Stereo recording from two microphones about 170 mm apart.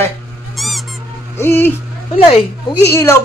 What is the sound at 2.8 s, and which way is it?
Speech, 15° left (ahead or behind).